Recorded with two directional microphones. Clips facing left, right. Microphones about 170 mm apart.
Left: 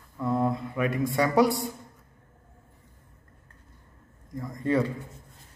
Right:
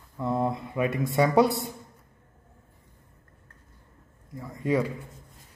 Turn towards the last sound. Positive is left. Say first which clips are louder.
# even
turn(degrees=-10)  # may be behind; listen again after turning